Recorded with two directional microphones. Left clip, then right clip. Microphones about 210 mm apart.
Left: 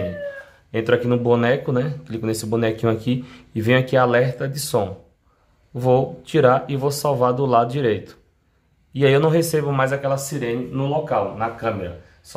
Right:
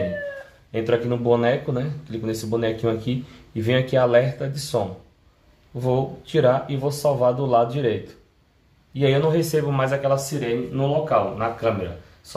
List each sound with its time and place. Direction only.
0.7 s speech: 25° left (ahead or behind)